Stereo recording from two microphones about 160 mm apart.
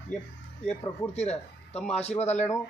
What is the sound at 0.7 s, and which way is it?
Speech, 40° left (ahead or behind).